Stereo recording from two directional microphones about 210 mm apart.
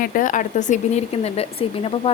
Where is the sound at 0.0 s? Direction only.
40° left (ahead or behind).